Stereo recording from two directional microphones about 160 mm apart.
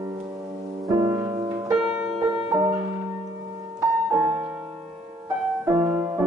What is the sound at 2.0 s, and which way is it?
Music, 5° right (ahead or behind).